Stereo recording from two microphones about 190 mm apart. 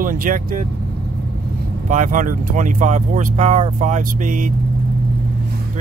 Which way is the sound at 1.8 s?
45° right (ahead or behind).